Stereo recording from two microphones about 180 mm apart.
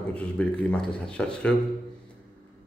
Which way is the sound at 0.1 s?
5° left (ahead or behind).